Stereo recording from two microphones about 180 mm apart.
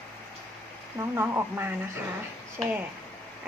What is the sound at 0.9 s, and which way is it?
Speech, 15° right (ahead or behind).